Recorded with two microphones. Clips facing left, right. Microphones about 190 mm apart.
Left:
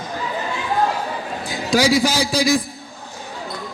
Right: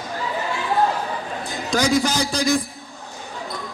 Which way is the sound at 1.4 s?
10° left (ahead or behind).